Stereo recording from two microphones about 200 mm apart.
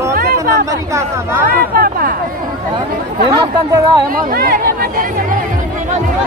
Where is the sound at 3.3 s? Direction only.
20° right (ahead or behind).